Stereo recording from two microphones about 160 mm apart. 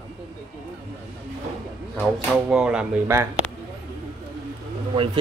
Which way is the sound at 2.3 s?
5° right (ahead or behind).